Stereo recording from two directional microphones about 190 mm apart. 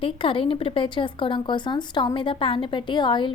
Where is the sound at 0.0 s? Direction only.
30° left (ahead or behind).